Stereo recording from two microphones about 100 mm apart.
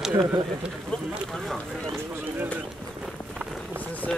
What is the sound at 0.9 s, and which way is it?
Speech, 15° left (ahead or behind).